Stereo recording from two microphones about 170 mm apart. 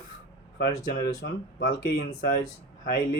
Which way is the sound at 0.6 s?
65° left (ahead or behind).